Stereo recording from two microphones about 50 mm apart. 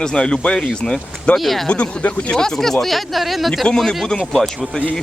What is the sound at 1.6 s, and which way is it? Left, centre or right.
Speech, left.